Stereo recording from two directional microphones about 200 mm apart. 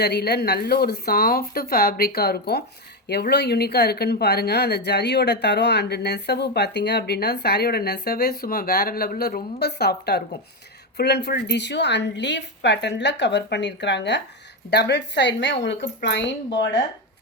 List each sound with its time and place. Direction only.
0.0 s a woman's voice: 55° left (ahead or behind)